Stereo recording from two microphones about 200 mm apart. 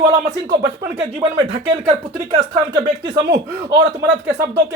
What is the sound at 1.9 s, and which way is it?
Speech, 20° right (ahead or behind).